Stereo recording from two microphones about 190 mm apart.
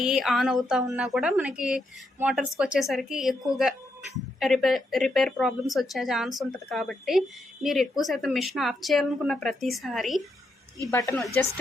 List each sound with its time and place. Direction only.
0.0 s speech: centre (ahead or behind)
10.9 s speech: 15° left (ahead or behind)